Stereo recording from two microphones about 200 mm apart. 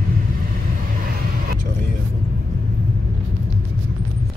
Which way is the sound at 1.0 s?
45° right (ahead or behind).